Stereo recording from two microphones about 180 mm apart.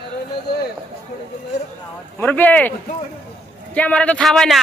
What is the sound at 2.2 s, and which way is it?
Speech, 10° left (ahead or behind).